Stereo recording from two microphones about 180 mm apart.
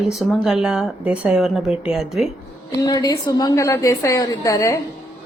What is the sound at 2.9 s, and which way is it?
A woman's voice, 20° left (ahead or behind).